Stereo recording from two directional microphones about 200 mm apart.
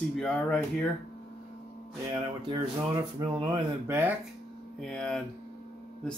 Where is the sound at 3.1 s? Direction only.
20° right (ahead or behind).